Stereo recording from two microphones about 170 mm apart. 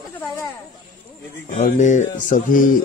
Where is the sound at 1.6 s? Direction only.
45° left (ahead or behind).